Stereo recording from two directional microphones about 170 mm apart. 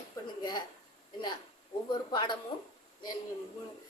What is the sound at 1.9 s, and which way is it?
Speech, 25° left (ahead or behind).